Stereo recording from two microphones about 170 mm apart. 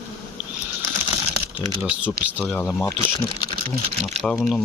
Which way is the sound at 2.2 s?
70° right (ahead or behind).